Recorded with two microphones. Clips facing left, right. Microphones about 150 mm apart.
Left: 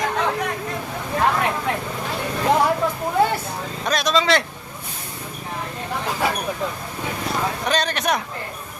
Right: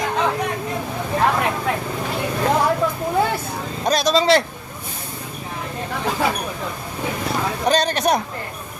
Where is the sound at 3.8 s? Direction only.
35° right (ahead or behind).